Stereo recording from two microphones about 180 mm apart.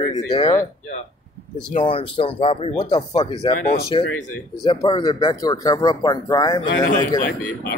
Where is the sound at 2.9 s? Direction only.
25° left (ahead or behind).